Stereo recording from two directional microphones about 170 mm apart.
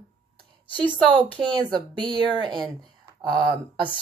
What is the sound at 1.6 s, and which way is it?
Speech, 25° right (ahead or behind).